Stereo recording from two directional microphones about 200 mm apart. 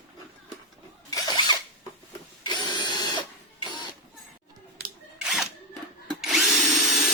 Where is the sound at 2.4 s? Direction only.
20° left (ahead or behind).